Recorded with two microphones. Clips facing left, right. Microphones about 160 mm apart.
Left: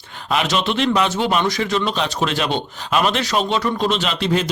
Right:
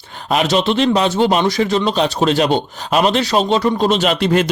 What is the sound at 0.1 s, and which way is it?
Speech, 40° right (ahead or behind).